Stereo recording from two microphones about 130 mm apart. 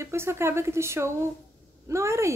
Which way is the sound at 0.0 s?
20° right (ahead or behind).